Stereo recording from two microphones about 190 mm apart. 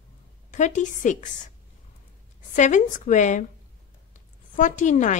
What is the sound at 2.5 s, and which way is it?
A woman's voice, 40° left (ahead or behind).